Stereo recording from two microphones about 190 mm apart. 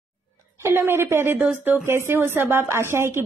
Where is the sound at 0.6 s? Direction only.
10° right (ahead or behind).